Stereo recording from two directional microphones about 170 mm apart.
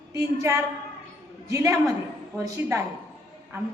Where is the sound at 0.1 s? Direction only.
15° right (ahead or behind).